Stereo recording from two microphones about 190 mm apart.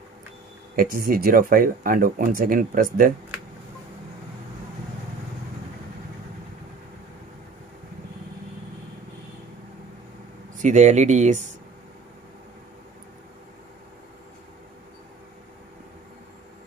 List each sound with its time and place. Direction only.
0.7 s speech: 50° right (ahead or behind)
10.6 s speech: 40° right (ahead or behind)